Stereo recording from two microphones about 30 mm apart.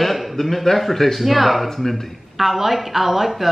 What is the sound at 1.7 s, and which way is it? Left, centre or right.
Speech, centre.